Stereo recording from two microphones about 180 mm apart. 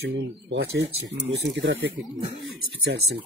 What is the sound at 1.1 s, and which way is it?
Speech, 85° right.